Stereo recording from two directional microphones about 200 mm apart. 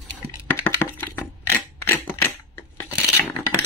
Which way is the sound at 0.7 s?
10° left (ahead or behind).